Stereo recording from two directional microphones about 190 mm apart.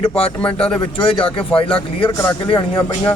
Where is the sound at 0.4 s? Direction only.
5° left (ahead or behind).